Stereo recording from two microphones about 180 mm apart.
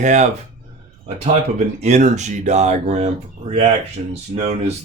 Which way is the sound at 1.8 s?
40° right (ahead or behind).